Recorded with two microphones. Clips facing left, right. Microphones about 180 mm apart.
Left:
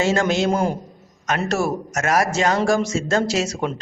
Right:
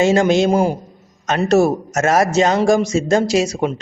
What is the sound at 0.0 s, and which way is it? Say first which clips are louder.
Speech: right 5 dB; 15° right (ahead or behind).